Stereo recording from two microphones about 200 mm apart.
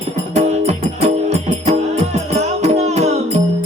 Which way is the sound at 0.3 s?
35° right (ahead or behind).